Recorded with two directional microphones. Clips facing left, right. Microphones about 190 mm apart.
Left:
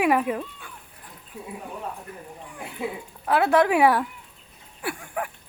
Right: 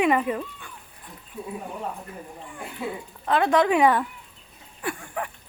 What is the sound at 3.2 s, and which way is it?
Speech, 5° left (ahead or behind).